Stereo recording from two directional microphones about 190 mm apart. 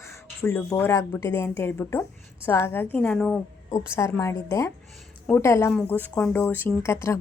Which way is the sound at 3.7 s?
15° left (ahead or behind).